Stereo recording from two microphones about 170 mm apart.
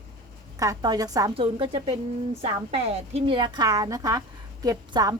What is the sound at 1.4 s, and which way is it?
A woman's voice, 30° right (ahead or behind).